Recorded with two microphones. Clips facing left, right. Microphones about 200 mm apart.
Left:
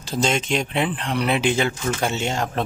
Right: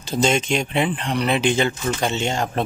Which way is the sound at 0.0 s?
Centre (ahead or behind).